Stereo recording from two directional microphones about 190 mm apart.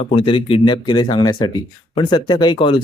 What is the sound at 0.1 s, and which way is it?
Speech, 30° left (ahead or behind).